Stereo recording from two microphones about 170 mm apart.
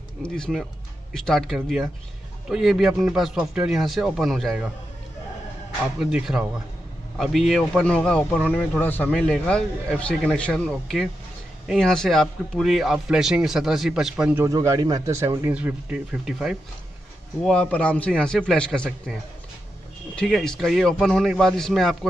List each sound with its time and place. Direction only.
0.2 s a man's voice: 5° left (ahead or behind)
5.9 s a man's voice: centre (ahead or behind)
14.4 s a man's voice: 20° right (ahead or behind); by 19.1 s 5° left (ahead or behind)
20.2 s a man's voice: centre (ahead or behind)